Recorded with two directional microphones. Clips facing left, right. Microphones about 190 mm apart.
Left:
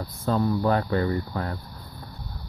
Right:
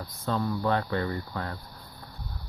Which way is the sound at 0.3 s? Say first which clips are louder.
Left 4 dB; 35° left (ahead or behind).